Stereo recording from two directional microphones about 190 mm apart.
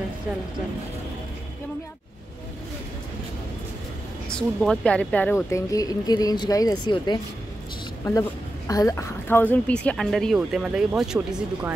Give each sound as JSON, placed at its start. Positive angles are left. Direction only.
{"t": 4.3, "sound": "speech", "side_deg": 5}